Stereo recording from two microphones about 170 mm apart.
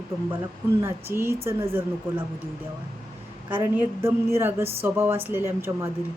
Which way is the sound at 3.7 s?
15° right (ahead or behind).